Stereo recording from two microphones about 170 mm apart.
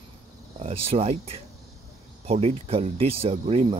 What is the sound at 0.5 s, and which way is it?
Speech, 35° right (ahead or behind).